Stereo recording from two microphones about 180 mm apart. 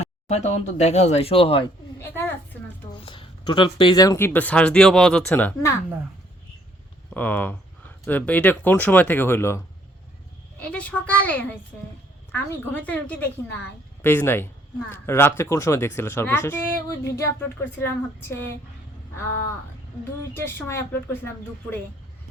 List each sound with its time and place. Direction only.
0.3 s speech: 40° left (ahead or behind)
2.0 s a woman's voice: 15° left (ahead or behind)
3.0 s speech: 30° left (ahead or behind); by 5.7 s 10° left (ahead or behind)
7.1 s speech: 10° left (ahead or behind)
20.3 s speech: 15° left (ahead or behind)